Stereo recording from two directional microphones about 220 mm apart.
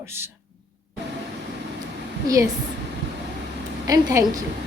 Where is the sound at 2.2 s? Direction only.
15° right (ahead or behind).